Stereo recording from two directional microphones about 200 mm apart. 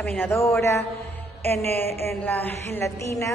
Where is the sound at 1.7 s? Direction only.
35° right (ahead or behind).